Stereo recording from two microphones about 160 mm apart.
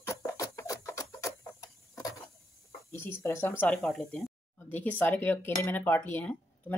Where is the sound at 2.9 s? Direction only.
15° left (ahead or behind).